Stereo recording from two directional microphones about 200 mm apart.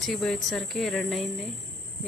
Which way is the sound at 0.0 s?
Centre (ahead or behind).